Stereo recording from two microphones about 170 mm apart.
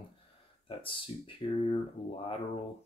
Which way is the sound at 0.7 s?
30° left (ahead or behind).